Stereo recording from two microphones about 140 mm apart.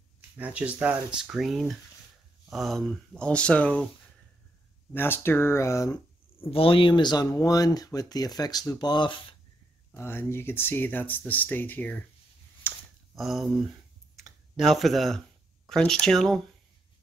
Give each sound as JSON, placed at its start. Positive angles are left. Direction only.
{"t": 0.4, "sound": "speech", "side_deg": -10}
{"t": 4.9, "sound": "speech", "side_deg": 15}
{"t": 6.5, "sound": "speech", "side_deg": 40}
{"t": 9.9, "sound": "speech", "side_deg": 15}
{"t": 12.7, "sound": "clicking", "side_deg": 15}
{"t": 13.1, "sound": "speech", "side_deg": 0}